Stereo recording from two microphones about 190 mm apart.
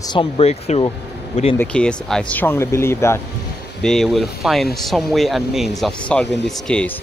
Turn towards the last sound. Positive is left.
turn(degrees=5)  # may be behind; listen again after turning